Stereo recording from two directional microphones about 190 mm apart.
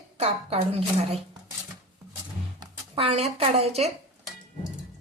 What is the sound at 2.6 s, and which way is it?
Speech, 30° right (ahead or behind).